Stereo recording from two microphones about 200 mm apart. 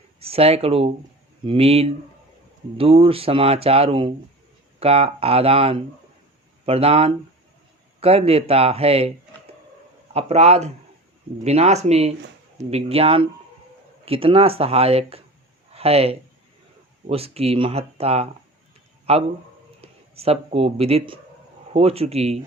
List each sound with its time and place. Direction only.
0.2 s speech: 30° right (ahead or behind)